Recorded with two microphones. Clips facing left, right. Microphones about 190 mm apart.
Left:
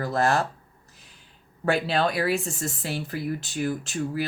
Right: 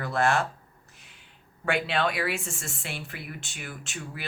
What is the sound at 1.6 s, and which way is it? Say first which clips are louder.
Speech: left 3 dB; 35° left (ahead or behind).